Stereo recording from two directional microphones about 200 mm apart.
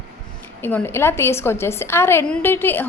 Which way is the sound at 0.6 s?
10° left (ahead or behind).